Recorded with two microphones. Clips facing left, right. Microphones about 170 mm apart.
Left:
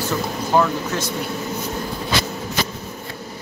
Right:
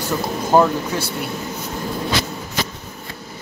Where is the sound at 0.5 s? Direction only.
40° right (ahead or behind).